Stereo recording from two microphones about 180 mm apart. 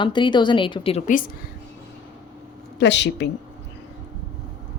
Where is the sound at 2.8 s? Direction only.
75° left (ahead or behind).